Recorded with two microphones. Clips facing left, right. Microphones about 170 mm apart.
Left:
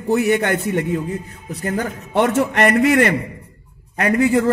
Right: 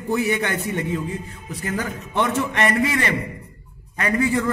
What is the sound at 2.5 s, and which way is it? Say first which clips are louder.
Speech: left 8 dB; 60° left (ahead or behind).